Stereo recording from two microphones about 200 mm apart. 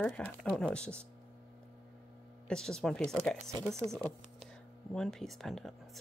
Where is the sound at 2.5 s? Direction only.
5° left (ahead or behind).